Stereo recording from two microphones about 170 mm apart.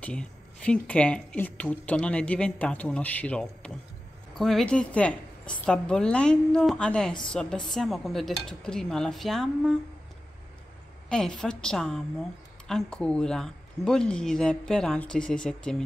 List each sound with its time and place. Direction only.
0.0 s speech: 5° left (ahead or behind)
11.1 s speech: 5° left (ahead or behind)